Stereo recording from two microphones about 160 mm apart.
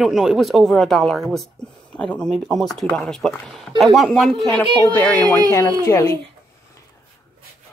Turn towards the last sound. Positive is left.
turn(degrees=20)  # may be behind; listen again after turning